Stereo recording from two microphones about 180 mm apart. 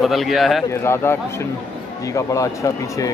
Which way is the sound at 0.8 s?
15° left (ahead or behind).